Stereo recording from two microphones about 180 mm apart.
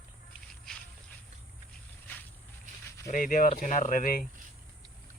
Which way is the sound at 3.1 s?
50° left (ahead or behind).